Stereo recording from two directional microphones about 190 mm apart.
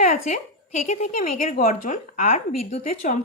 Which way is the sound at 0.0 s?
45° left (ahead or behind).